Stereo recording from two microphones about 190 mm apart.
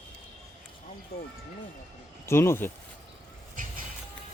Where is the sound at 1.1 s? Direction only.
55° left (ahead or behind).